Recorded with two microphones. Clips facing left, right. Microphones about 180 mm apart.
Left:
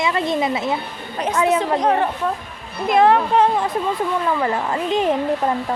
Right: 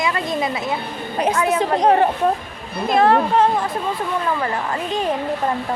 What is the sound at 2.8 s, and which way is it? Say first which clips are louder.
Speech: left 1 dB; 15° left (ahead or behind).